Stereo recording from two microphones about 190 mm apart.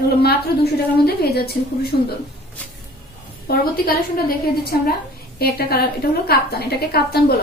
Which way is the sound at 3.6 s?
50° left (ahead or behind).